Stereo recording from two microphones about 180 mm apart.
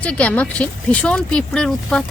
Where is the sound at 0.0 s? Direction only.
5° left (ahead or behind).